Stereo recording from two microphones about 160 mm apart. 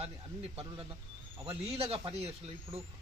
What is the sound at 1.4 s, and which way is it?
Speech, 35° right (ahead or behind).